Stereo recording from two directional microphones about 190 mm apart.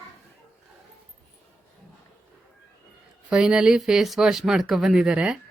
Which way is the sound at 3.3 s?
5° right (ahead or behind).